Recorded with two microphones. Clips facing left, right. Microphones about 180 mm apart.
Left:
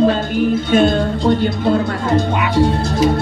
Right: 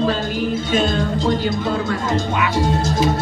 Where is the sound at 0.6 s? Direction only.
60° left (ahead or behind).